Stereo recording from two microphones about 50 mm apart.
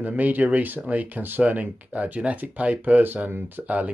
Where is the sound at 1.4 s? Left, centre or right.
Right.